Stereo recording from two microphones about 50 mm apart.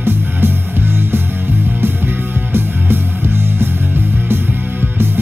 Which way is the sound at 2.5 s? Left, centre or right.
Right.